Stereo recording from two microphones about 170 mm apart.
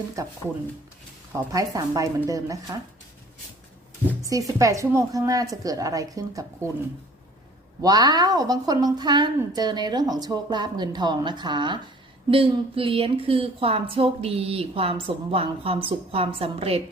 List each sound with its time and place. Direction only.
0.2 s a woman's voice: 20° right (ahead or behind)
4.2 s a woman's voice: 20° right (ahead or behind)
7.8 s a woman's voice: 20° right (ahead or behind)